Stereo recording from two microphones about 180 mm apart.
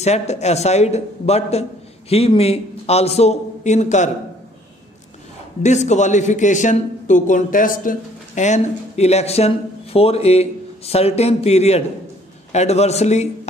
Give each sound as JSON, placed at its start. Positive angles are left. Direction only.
{"t": 0.0, "sound": "a man's voice", "side_deg": 35}
{"t": 5.6, "sound": "a man's voice", "side_deg": 40}